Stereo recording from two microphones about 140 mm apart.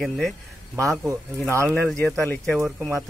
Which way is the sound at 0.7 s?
20° right (ahead or behind).